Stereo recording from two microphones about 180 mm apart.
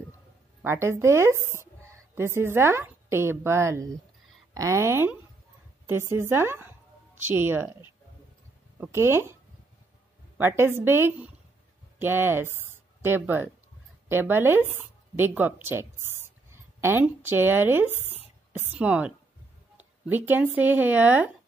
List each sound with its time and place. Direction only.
0.6 s a woman's voice: 15° right (ahead or behind)
8.7 s a woman's voice: 10° right (ahead or behind)
16.5 s a sound: 15° right (ahead or behind)
17.0 s a woman's voice: 10° right (ahead or behind)